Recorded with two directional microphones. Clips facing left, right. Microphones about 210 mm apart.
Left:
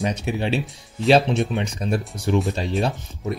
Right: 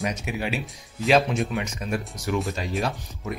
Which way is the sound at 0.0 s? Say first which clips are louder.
Left 4 dB; 30° left (ahead or behind).